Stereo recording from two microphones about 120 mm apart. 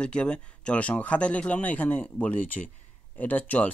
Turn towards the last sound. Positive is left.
turn(degrees=15)  # may be behind; listen again after turning